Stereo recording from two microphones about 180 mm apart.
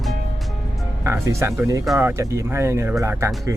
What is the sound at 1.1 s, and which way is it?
Speech, 15° right (ahead or behind).